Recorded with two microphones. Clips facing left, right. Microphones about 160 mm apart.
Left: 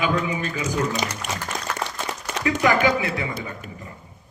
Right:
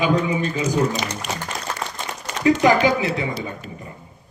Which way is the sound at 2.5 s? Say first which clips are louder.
Right 4 dB; 25° right (ahead or behind).